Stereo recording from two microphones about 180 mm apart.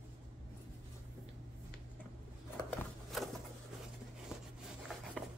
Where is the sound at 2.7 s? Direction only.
Centre (ahead or behind).